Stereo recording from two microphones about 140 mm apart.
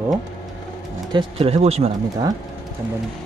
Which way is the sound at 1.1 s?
40° right (ahead or behind).